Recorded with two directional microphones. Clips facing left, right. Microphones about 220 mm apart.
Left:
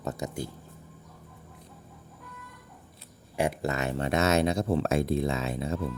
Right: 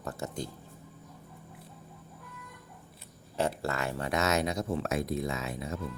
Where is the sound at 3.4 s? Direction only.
15° left (ahead or behind).